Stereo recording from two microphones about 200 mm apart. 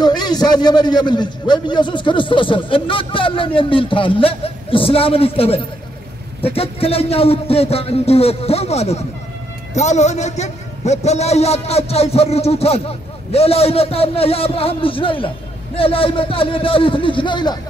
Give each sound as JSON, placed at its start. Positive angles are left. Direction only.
{"t": 0.0, "sound": "a man's voice", "side_deg": 20}